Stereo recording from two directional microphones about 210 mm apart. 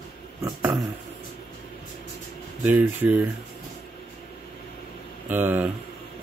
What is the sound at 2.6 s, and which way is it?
Speech, 10° right (ahead or behind).